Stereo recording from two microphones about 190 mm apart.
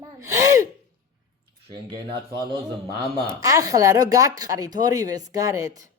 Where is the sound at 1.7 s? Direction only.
25° right (ahead or behind).